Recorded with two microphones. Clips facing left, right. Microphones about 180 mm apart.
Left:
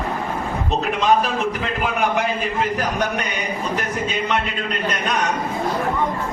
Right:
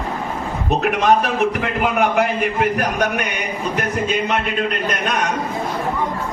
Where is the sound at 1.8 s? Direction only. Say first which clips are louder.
Right 4 dB; 65° right (ahead or behind).